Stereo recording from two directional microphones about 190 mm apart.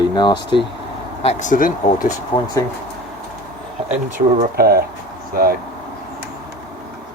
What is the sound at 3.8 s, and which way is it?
Speech, 40° right (ahead or behind).